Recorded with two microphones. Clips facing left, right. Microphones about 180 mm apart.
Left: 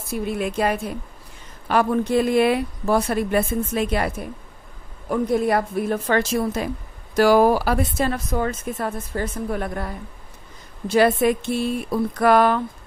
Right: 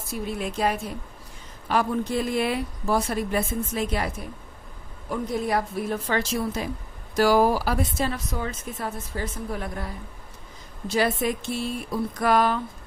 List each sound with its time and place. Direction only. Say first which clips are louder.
0.1 s speech: left 5 dB; 60° left (ahead or behind)